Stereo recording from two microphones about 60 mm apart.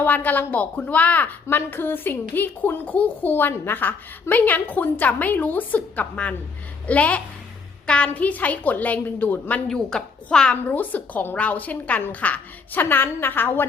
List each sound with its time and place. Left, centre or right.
0.0 s a woman's voice: left
9.6 s a woman's voice: centre
10.5 s a woman's voice: left
12.8 s a woman's voice: left